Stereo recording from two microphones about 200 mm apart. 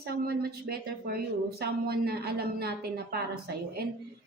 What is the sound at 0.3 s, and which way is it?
Speech, 50° right (ahead or behind).